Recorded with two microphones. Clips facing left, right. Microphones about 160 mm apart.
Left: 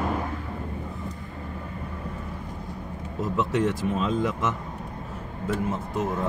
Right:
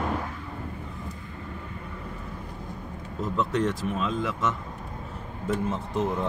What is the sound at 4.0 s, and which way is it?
Speech, 20° left (ahead or behind).